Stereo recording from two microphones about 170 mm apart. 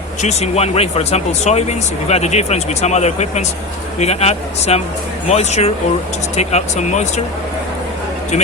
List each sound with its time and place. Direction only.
0.2 s speech: 40° left (ahead or behind)